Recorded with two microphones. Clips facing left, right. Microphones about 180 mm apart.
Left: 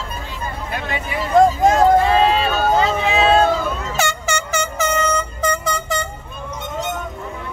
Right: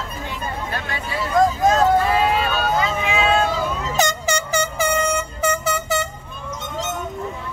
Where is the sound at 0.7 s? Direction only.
20° left (ahead or behind).